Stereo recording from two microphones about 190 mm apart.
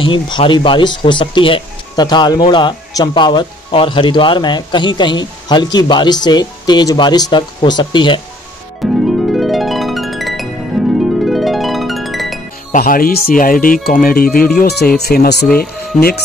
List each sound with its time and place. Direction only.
0.0 s speech: 25° left (ahead or behind)
8.8 s harp: centre (ahead or behind)
12.7 s speech: 50° left (ahead or behind)